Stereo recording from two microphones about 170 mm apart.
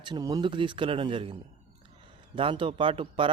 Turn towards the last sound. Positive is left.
turn(degrees=-30)  # may be behind; listen again after turning